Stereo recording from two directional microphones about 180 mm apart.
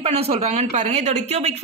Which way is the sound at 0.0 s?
30° right (ahead or behind).